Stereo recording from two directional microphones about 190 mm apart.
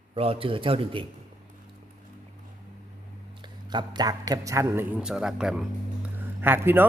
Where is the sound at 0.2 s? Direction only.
30° right (ahead or behind).